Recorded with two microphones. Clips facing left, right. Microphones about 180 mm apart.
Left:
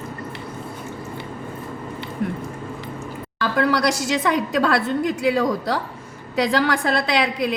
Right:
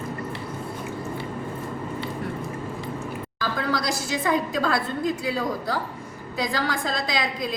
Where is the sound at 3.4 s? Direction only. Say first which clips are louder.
Left 7 dB; 70° left (ahead or behind).